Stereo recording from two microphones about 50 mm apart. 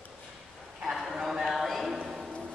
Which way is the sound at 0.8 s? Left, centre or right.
Centre.